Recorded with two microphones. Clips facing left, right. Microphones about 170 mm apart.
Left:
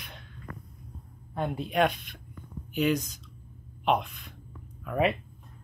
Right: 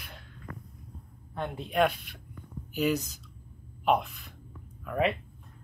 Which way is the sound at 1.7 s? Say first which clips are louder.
Right 1 dB; 5° right (ahead or behind).